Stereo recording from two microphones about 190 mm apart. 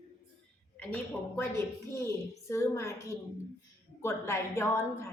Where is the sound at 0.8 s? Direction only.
10° left (ahead or behind).